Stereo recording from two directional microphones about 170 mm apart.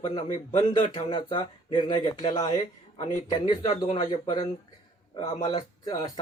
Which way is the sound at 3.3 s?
25° left (ahead or behind).